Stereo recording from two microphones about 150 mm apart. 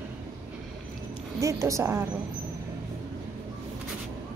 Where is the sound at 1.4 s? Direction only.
20° right (ahead or behind).